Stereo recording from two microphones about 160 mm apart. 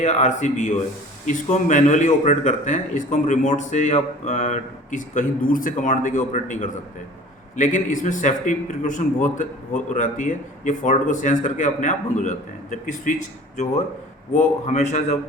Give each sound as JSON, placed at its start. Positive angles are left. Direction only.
{"t": 0.0, "sound": "a man's voice", "side_deg": 45}
{"t": 14.3, "sound": "a man's voice", "side_deg": 45}